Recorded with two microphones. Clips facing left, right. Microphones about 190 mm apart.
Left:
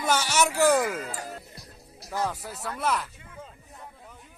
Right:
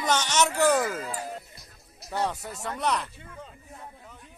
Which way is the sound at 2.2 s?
Centre (ahead or behind).